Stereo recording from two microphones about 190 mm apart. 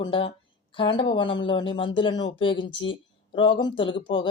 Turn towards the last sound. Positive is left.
turn(degrees=25)  # may be behind; listen again after turning